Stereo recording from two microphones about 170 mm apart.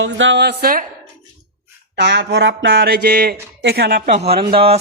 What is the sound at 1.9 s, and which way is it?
Speech, 90° right.